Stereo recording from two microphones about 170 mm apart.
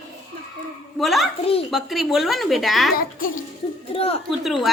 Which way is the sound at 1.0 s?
Centre (ahead or behind).